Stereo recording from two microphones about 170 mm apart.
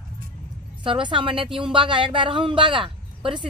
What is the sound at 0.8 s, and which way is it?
Speech, 30° right (ahead or behind).